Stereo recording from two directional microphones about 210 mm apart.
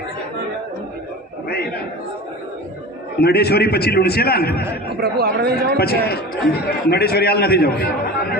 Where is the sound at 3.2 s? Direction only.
50° left (ahead or behind).